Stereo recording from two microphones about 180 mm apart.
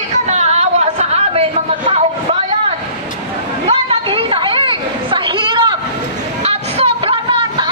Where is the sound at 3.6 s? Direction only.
30° right (ahead or behind).